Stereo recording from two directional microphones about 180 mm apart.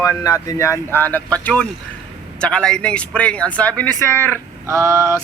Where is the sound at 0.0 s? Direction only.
20° left (ahead or behind).